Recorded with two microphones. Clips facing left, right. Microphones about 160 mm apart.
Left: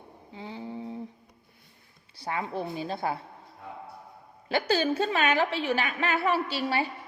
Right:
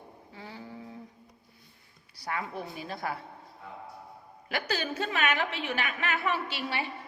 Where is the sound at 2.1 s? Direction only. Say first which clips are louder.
Left 4 dB; 25° left (ahead or behind).